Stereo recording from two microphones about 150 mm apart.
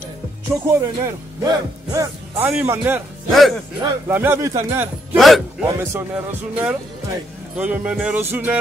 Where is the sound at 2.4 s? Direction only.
10° right (ahead or behind).